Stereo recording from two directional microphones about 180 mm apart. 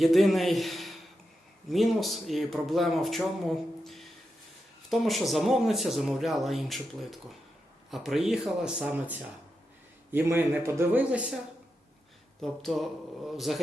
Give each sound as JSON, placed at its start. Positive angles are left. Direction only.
{"t": 0.0, "sound": "a man's voice", "side_deg": 0}
{"t": 12.4, "sound": "speech", "side_deg": 0}